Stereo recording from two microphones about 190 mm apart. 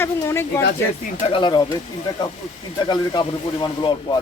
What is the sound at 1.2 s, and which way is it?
Speech, 25° left (ahead or behind).